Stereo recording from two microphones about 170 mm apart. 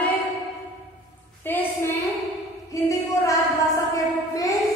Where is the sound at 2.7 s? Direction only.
20° left (ahead or behind).